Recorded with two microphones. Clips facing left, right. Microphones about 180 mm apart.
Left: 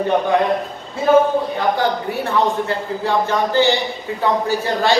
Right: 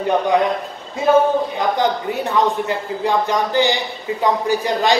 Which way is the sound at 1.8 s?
20° right (ahead or behind).